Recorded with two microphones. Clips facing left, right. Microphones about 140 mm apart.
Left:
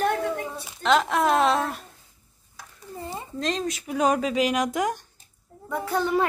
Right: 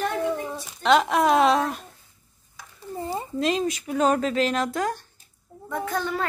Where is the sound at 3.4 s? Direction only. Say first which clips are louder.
Right 3 dB; 5° right (ahead or behind); by 6.3 s 15° left (ahead or behind).